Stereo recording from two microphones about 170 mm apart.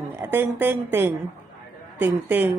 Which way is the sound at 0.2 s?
10° right (ahead or behind).